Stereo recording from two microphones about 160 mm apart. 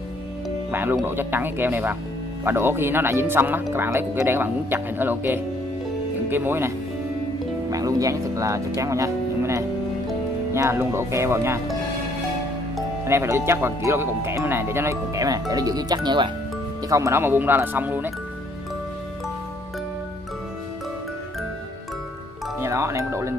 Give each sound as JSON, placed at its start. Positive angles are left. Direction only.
{"t": 0.7, "sound": "speech", "side_deg": -15}
{"t": 7.7, "sound": "speech", "side_deg": -20}
{"t": 13.0, "sound": "speech", "side_deg": -15}
{"t": 22.6, "sound": "speech", "side_deg": -15}